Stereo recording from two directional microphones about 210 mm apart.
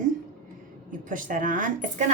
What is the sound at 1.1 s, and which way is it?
Speech, 40° right (ahead or behind).